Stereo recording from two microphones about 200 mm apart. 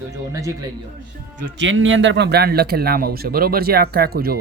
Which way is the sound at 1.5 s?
70° right (ahead or behind).